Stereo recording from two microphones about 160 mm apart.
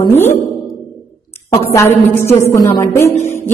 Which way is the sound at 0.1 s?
15° left (ahead or behind).